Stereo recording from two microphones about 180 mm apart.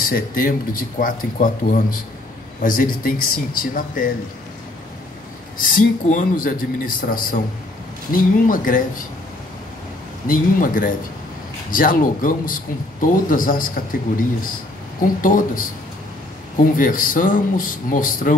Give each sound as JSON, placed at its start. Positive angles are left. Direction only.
{"t": 0.0, "sound": "speech", "side_deg": 50}
{"t": 5.6, "sound": "speech", "side_deg": 50}
{"t": 10.2, "sound": "speech", "side_deg": 50}
{"t": 15.0, "sound": "speech", "side_deg": 50}
{"t": 16.7, "sound": "speech", "side_deg": 50}